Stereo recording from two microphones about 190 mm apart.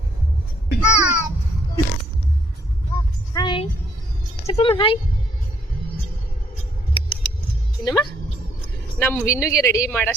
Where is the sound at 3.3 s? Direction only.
20° left (ahead or behind).